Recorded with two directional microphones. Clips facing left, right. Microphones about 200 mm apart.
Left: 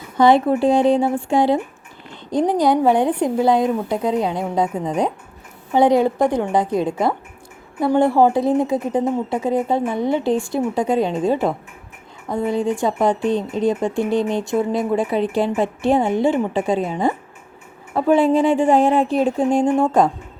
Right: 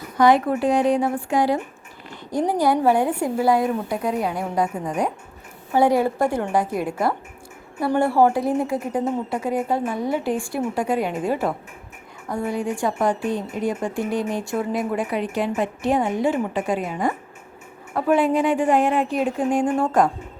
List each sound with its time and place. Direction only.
0.2 s speech: 25° left (ahead or behind)